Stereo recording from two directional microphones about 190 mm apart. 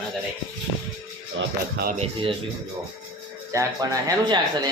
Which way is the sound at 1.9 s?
30° right (ahead or behind).